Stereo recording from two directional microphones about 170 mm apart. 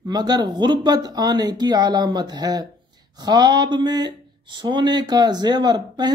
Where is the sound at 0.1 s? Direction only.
25° right (ahead or behind).